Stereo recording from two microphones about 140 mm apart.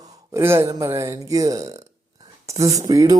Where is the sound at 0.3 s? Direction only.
20° right (ahead or behind).